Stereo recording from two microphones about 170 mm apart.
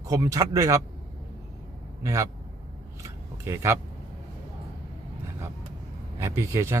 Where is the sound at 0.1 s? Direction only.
20° right (ahead or behind).